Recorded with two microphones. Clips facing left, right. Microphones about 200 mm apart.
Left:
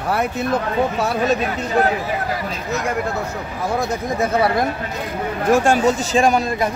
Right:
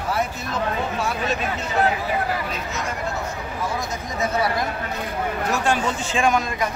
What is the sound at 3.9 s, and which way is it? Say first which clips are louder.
Speech: left 5 dB; 55° left (ahead or behind).